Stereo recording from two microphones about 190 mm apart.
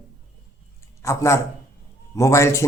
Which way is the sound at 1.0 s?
15° left (ahead or behind).